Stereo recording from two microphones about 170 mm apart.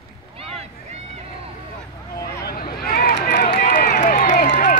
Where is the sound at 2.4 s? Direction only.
60° left (ahead or behind).